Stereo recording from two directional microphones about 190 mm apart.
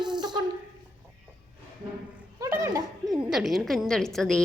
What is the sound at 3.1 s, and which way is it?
A woman's voice, centre (ahead or behind).